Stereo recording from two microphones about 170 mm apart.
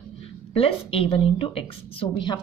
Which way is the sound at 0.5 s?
35° left (ahead or behind).